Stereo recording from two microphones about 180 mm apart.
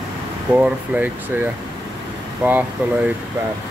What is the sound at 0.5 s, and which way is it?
Speech, 10° right (ahead or behind).